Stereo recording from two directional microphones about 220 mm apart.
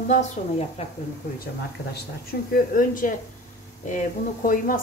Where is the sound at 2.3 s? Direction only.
40° left (ahead or behind).